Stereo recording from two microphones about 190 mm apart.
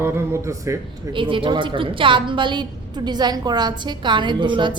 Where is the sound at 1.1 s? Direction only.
25° right (ahead or behind).